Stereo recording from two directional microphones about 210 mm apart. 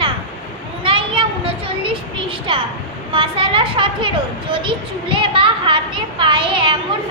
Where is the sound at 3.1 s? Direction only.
25° right (ahead or behind).